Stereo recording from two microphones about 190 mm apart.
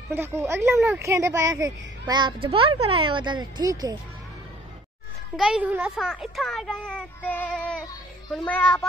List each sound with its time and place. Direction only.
0.1 s speech: 10° right (ahead or behind)
5.3 s a child's voice: 5° right (ahead or behind)